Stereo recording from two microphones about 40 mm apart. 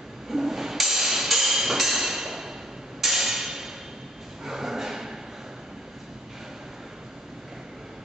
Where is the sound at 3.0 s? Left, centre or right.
Centre.